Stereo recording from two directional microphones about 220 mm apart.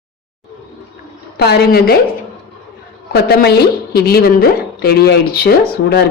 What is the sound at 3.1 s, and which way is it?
A woman's voice, 45° left (ahead or behind).